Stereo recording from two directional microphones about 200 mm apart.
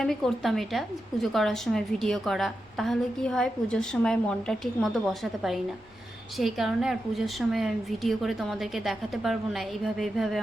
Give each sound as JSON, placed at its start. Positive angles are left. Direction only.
{"t": 0.0, "sound": "a woman's voice", "side_deg": 0}